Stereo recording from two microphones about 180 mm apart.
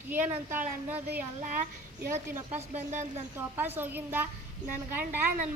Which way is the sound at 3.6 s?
10° right (ahead or behind).